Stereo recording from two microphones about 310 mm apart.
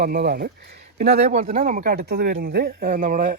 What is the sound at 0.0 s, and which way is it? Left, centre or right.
Speech, right.